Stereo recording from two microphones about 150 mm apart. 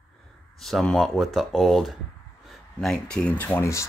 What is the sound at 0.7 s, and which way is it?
Speech, centre (ahead or behind).